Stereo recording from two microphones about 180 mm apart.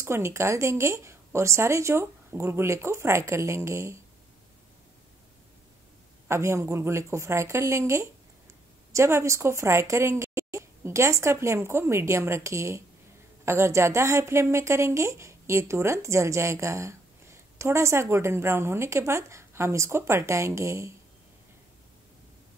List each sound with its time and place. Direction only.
0.0 s a woman's voice: 15° right (ahead or behind)
6.2 s a woman's voice: 15° right (ahead or behind)